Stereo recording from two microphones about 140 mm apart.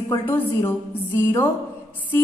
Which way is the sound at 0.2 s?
15° left (ahead or behind).